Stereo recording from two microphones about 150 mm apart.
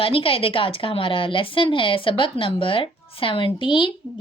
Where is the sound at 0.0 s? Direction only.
35° left (ahead or behind).